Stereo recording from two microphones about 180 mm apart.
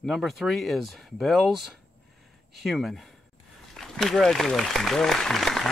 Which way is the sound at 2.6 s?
Centre (ahead or behind).